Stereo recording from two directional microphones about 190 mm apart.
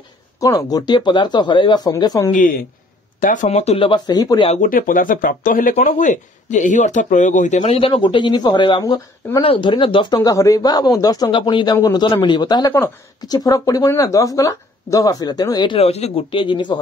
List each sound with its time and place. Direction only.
0.4 s speech: 20° left (ahead or behind)
2.3 s a man's voice: 45° left (ahead or behind); by 4.5 s 20° left (ahead or behind)
4.6 s speech: 45° left (ahead or behind); by 16.8 s 25° left (ahead or behind)